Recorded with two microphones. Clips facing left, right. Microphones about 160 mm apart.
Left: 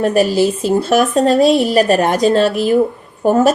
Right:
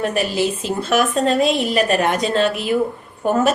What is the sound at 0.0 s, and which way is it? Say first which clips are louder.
A woman's voice: left 7 dB; 40° left (ahead or behind).